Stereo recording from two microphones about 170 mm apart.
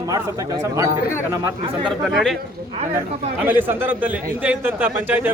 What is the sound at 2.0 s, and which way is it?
Speech, centre (ahead or behind).